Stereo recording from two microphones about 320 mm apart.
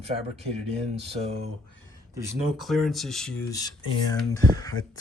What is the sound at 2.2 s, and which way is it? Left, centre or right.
Speech, centre.